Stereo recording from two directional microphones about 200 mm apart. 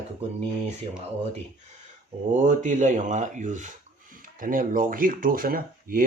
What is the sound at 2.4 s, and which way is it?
Speech, 40° right (ahead or behind).